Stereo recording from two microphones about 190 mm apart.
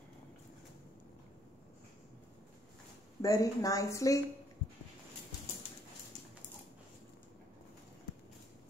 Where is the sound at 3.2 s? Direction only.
15° left (ahead or behind).